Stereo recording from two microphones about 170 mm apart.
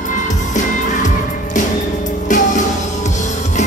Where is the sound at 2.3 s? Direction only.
50° left (ahead or behind).